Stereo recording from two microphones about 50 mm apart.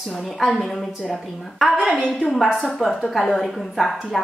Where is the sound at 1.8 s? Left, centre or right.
Centre.